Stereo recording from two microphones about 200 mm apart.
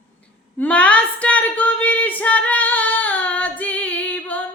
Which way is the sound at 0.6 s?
5° left (ahead or behind).